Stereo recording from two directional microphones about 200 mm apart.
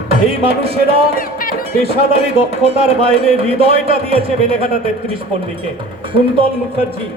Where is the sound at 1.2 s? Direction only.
45° left (ahead or behind).